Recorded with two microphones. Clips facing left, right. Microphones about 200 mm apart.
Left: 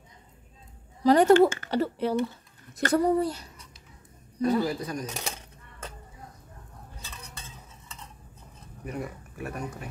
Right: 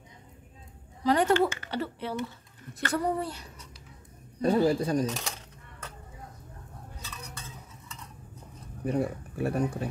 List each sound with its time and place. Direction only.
1.0 s speech: 40° left (ahead or behind)
4.4 s speech: 30° right (ahead or behind)
7.0 s stir: 25° left (ahead or behind)
8.8 s speech: 30° right (ahead or behind)